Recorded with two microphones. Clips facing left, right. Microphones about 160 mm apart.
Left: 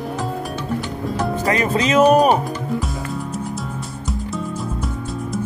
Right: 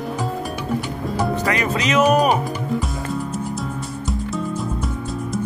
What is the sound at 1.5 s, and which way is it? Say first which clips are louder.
Music: left 2 dB; 30° left (ahead or behind).